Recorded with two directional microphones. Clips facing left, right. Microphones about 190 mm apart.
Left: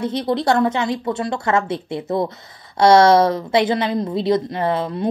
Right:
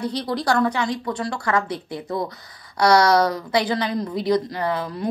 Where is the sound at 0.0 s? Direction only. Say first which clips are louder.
Left 4 dB; 25° left (ahead or behind).